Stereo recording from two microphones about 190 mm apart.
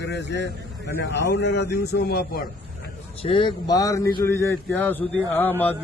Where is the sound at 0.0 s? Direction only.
65° left (ahead or behind).